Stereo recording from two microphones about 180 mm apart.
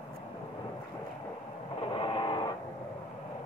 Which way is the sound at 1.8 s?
25° left (ahead or behind).